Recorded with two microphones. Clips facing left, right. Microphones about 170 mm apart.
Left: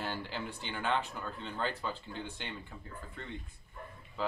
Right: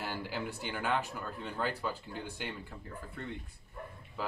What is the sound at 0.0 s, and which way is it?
Speech, 10° right (ahead or behind).